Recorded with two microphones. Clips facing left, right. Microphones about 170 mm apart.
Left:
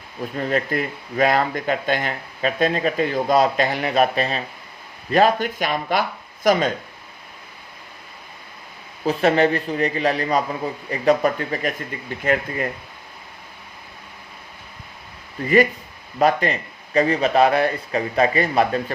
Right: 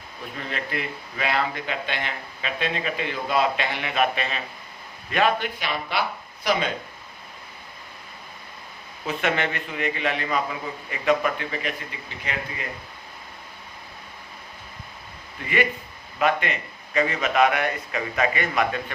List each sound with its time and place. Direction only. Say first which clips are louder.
0.3 s speech: left 9 dB; 45° left (ahead or behind)
9.0 s speech: left 8 dB; 35° left (ahead or behind)
15.4 s speech: left 8 dB; 40° left (ahead or behind)